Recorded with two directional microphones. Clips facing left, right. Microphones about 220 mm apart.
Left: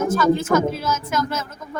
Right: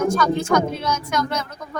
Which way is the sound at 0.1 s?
5° left (ahead or behind).